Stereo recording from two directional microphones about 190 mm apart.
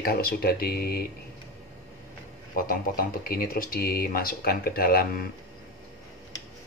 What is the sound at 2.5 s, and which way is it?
Speech, 50° left (ahead or behind).